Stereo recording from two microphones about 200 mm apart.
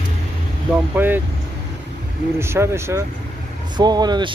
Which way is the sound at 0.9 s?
10° right (ahead or behind).